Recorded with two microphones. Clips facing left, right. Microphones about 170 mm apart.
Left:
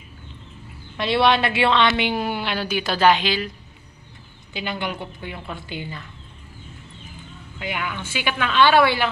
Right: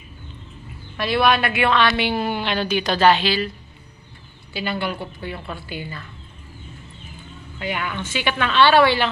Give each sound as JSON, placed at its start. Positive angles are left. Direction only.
{"t": 0.9, "sound": "a woman's voice", "side_deg": 25}
{"t": 4.6, "sound": "a woman's voice", "side_deg": 15}
{"t": 7.5, "sound": "a woman's voice", "side_deg": 10}